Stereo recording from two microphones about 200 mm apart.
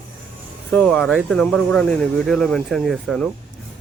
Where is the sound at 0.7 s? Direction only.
5° left (ahead or behind).